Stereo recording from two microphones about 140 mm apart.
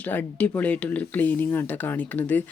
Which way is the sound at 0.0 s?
10° left (ahead or behind).